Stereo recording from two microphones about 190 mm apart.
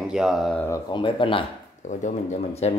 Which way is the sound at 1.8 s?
40° left (ahead or behind).